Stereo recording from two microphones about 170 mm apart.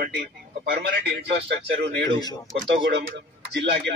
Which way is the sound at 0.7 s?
90° right.